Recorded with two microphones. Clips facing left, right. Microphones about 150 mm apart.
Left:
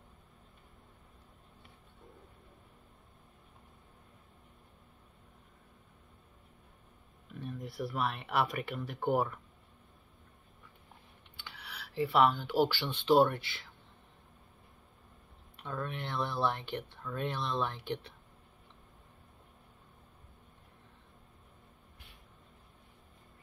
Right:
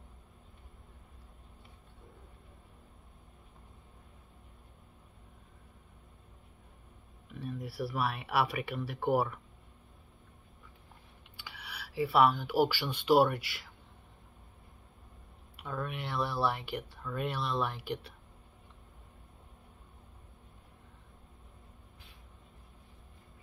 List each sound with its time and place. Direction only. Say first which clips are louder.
7.2 s speech: right 2 dB; 5° right (ahead or behind)
11.3 s speech: right 1 dB; 10° right (ahead or behind)
15.5 s speech: right 1 dB; 5° right (ahead or behind)